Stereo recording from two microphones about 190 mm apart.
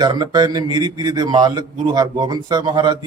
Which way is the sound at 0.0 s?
20° right (ahead or behind).